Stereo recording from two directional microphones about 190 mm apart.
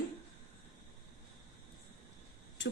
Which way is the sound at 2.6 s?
70° left (ahead or behind).